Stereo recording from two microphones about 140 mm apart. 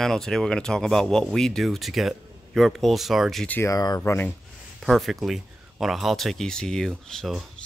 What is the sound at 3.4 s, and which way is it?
Speech, 10° left (ahead or behind).